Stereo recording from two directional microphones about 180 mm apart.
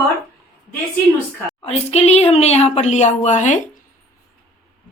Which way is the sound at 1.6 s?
35° left (ahead or behind).